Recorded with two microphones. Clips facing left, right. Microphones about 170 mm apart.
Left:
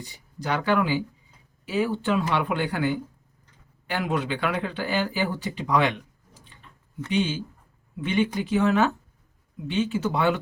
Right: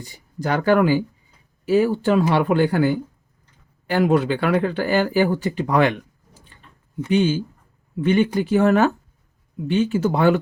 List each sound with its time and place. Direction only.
0.0 s speech: 45° right (ahead or behind)
7.1 s speech: 45° right (ahead or behind)